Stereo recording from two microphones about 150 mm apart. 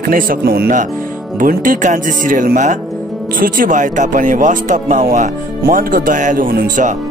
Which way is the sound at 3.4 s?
70° right (ahead or behind).